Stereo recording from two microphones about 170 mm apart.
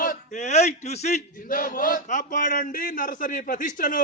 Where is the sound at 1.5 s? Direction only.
55° left (ahead or behind).